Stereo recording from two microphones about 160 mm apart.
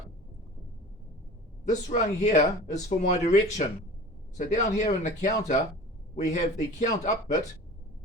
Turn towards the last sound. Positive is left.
turn(degrees=50)  # may be behind; listen again after turning